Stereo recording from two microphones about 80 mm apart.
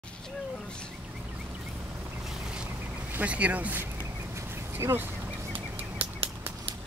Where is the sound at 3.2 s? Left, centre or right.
Centre.